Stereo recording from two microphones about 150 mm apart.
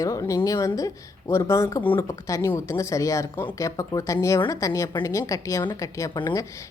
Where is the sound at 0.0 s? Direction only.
20° left (ahead or behind).